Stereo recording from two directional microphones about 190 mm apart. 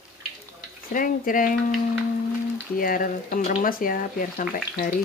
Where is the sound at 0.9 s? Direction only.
45° left (ahead or behind).